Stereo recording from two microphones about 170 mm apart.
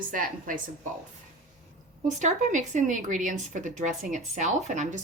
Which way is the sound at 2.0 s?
45° right (ahead or behind).